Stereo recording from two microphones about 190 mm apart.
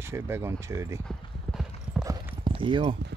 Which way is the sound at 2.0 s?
20° right (ahead or behind).